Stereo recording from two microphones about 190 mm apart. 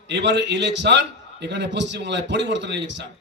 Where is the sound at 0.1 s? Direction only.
65° right (ahead or behind).